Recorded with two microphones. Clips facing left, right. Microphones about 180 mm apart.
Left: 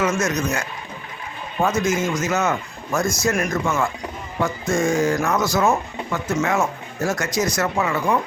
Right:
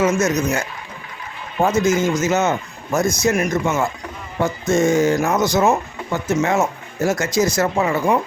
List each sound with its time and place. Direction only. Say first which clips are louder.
0.0 s speech: right 4 dB; 25° right (ahead or behind)
1.6 s speech: right 4 dB; 25° right (ahead or behind)